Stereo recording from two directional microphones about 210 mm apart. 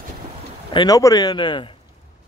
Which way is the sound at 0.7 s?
20° left (ahead or behind).